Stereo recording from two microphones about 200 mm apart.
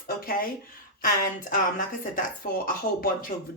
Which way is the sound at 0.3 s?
45° left (ahead or behind).